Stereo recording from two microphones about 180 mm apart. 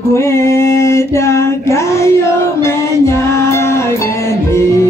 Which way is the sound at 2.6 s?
15° left (ahead or behind).